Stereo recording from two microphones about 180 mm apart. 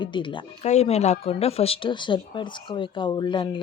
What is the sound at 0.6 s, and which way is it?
A woman's voice, 35° left (ahead or behind).